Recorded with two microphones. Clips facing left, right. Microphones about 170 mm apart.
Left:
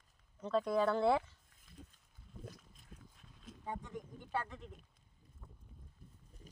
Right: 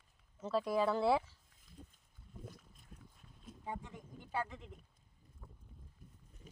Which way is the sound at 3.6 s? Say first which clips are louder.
Left 2 dB; 10° right (ahead or behind).